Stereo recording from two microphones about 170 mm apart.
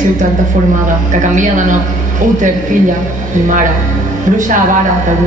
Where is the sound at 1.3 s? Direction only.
45° right (ahead or behind).